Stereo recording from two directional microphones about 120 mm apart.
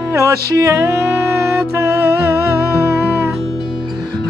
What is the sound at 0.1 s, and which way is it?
Music, 25° right (ahead or behind).